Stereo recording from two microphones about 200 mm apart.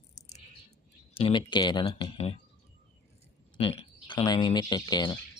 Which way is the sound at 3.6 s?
25° left (ahead or behind).